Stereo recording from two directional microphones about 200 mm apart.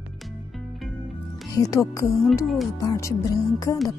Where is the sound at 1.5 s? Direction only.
15° left (ahead or behind).